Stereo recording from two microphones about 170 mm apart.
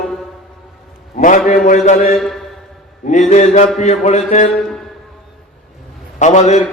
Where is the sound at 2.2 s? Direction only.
Centre (ahead or behind).